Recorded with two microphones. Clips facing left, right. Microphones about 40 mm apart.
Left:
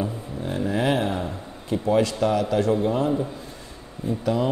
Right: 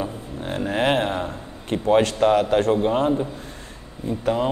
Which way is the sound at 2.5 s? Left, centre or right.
Right.